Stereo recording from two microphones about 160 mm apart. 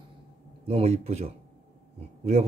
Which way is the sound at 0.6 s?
40° right (ahead or behind).